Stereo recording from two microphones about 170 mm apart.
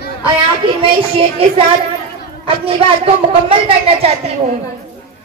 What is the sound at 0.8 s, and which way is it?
A woman's voice, 30° right (ahead or behind).